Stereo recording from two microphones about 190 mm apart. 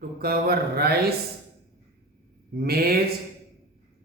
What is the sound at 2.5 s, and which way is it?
Speech, 55° right (ahead or behind).